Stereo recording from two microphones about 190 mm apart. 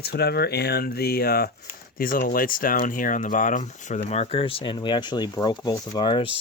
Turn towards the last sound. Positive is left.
turn(degrees=25)  # may be behind; listen again after turning